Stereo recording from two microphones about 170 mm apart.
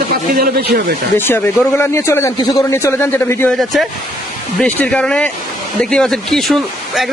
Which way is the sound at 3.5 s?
Centre (ahead or behind).